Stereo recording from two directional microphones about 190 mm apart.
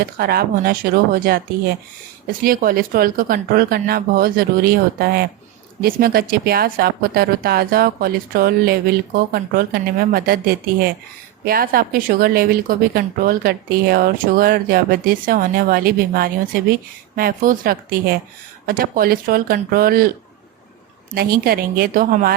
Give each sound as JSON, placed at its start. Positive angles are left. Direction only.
{"t": 0.0, "sound": "speech", "side_deg": -55}
{"t": 21.2, "sound": "speech", "side_deg": -55}